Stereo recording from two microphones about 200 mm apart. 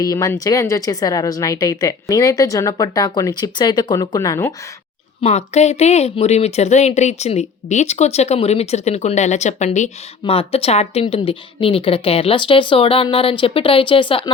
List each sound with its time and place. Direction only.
0.0 s speech: 15° left (ahead or behind)
5.2 s speech: 35° left (ahead or behind)